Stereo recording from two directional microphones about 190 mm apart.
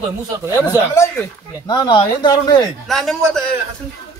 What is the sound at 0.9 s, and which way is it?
Speech, 15° left (ahead or behind).